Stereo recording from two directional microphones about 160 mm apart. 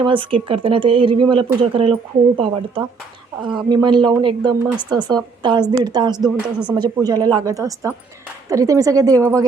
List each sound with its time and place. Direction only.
0.0 s a woman's voice: 30° right (ahead or behind)